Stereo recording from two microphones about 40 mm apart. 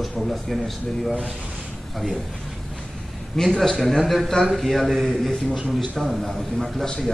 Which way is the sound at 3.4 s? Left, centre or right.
Centre.